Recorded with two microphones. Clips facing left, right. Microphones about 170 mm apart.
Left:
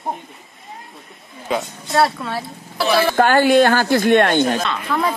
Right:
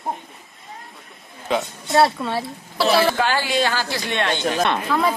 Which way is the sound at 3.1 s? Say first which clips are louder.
Left 8 dB; 50° left (ahead or behind).